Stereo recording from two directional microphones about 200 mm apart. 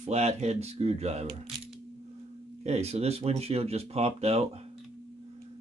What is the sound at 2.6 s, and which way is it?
Speech, 30° right (ahead or behind).